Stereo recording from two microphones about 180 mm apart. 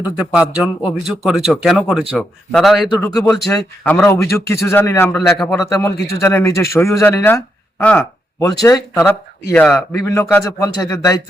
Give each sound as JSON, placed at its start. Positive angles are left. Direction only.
{"t": 0.2, "sound": "speech", "side_deg": -5}
{"t": 3.6, "sound": "a man's voice", "side_deg": 10}
{"t": 5.5, "sound": "a man's voice", "side_deg": 15}
{"t": 9.5, "sound": "speech", "side_deg": 5}
{"t": 9.9, "sound": "a man's voice", "side_deg": 15}